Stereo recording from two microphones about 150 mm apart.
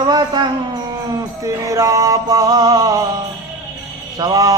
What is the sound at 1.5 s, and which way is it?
Mantra, 20° right (ahead or behind).